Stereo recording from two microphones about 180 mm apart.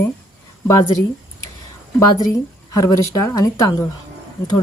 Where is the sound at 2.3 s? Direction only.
20° left (ahead or behind).